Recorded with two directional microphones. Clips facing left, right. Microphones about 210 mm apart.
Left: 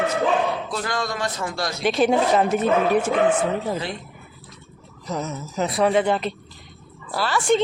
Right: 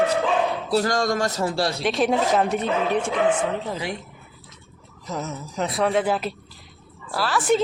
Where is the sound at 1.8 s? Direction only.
Centre (ahead or behind).